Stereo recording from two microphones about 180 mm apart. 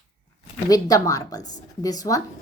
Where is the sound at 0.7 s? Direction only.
20° left (ahead or behind).